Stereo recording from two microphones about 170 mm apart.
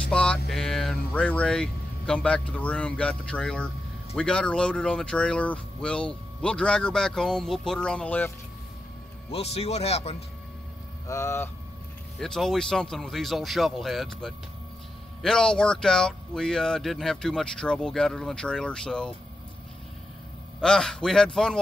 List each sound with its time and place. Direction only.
0.1 s music: 5° left (ahead or behind)
0.5 s speech: 5° left (ahead or behind)
9.3 s speech: 35° left (ahead or behind)
11.1 s speech: 15° left (ahead or behind)
12.2 s speech: centre (ahead or behind)
20.6 s speech: 5° left (ahead or behind)